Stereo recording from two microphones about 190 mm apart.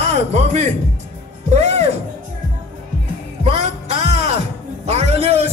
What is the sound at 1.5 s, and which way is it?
Music, 35° right (ahead or behind).